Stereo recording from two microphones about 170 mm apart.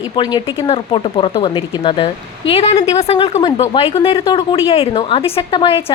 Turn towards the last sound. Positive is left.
turn(degrees=35)  # may be behind; listen again after turning